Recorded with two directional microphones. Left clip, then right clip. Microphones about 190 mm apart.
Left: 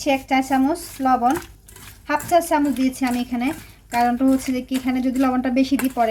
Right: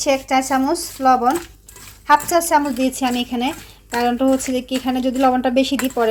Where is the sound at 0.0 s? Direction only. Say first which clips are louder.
Right 3 dB; 20° right (ahead or behind).